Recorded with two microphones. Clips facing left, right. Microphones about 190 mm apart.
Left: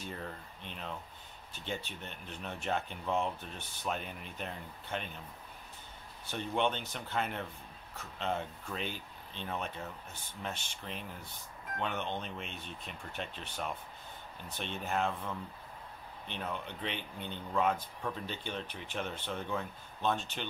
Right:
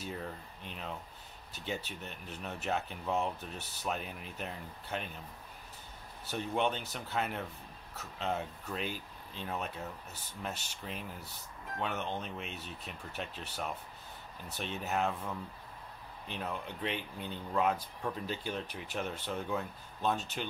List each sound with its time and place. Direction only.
0.0 s speech: 5° right (ahead or behind)
6.3 s speech: 5° right (ahead or behind)
10.9 s speech: 5° right (ahead or behind)